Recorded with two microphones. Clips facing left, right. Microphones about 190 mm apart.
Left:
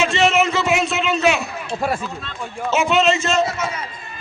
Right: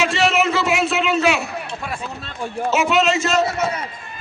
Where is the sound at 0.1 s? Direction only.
Centre (ahead or behind).